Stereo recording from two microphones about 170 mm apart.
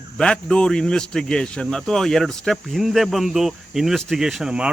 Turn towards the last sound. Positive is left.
turn(degrees=-5)  # may be behind; listen again after turning